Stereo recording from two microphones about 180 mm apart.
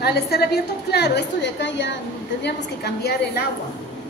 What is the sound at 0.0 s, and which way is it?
A woman's voice, 60° left (ahead or behind).